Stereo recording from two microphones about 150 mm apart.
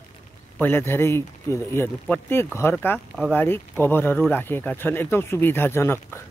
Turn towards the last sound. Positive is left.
turn(degrees=15)  # may be behind; listen again after turning